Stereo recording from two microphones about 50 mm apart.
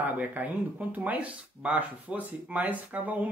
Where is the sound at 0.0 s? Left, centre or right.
Right.